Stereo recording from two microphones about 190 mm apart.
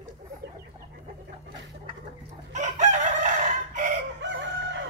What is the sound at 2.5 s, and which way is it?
Chicken, 40° right (ahead or behind).